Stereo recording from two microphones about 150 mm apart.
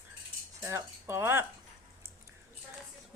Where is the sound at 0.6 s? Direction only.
15° right (ahead or behind).